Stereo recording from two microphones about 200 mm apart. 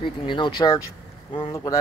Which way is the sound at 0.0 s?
25° left (ahead or behind).